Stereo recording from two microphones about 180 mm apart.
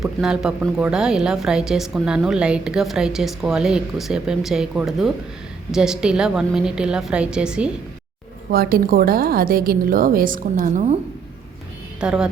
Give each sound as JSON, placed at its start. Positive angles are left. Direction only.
{"t": 0.0, "sound": "a woman's voice", "side_deg": -5}
{"t": 8.4, "sound": "a woman's voice", "side_deg": -55}
{"t": 11.9, "sound": "a woman's voice", "side_deg": -5}